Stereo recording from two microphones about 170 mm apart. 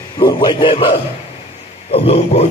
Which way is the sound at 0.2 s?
25° left (ahead or behind).